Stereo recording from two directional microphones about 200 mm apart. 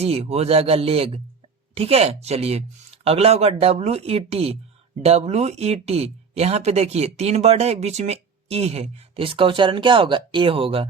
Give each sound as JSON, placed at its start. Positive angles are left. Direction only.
{"t": 0.0, "sound": "speech", "side_deg": -30}